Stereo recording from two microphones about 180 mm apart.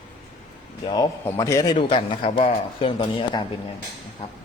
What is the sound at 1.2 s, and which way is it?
A man's voice, 20° left (ahead or behind).